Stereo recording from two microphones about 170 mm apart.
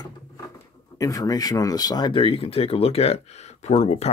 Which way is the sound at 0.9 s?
20° left (ahead or behind).